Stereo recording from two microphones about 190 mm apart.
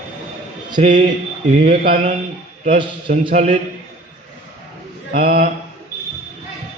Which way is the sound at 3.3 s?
40° right (ahead or behind).